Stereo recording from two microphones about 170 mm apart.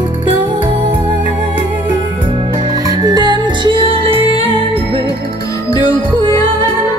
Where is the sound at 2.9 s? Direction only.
25° right (ahead or behind).